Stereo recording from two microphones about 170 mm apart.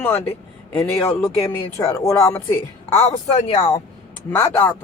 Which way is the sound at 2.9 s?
35° left (ahead or behind).